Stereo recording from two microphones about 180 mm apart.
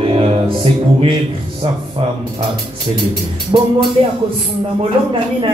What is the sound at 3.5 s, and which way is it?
Music, 35° right (ahead or behind).